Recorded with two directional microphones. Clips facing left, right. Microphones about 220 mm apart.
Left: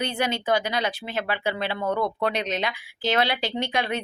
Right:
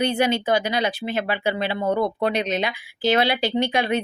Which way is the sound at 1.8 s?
25° right (ahead or behind).